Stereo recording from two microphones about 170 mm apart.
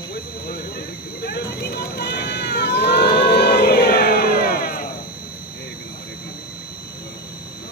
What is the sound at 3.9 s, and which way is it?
Music, 70° left (ahead or behind).